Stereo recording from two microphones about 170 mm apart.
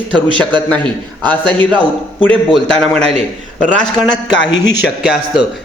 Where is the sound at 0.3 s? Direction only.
10° left (ahead or behind).